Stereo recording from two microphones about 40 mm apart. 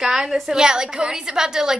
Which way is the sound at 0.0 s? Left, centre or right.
Centre.